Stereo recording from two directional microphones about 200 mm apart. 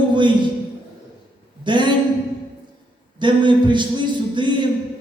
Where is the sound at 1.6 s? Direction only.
25° right (ahead or behind).